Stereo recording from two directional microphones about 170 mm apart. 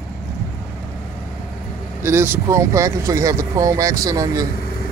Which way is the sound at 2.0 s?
15° right (ahead or behind).